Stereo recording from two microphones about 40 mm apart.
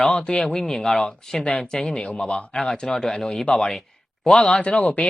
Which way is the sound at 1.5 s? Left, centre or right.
Left.